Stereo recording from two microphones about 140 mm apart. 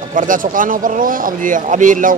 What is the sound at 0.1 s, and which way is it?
Speech, 70° right (ahead or behind).